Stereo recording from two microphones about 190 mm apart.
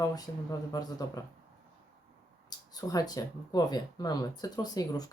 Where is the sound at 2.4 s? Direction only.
20° left (ahead or behind).